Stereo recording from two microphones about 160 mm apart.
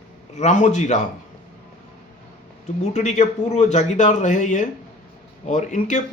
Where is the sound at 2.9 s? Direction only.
45° left (ahead or behind).